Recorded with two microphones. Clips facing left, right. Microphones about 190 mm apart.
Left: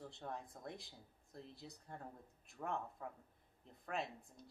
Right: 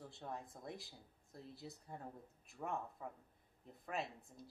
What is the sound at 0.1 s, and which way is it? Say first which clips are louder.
Speech: even; centre (ahead or behind).